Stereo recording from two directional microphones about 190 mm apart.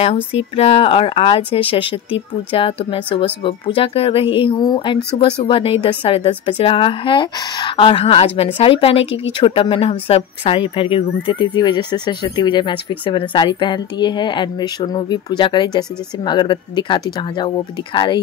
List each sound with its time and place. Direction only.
0.0 s speech: 35° left (ahead or behind)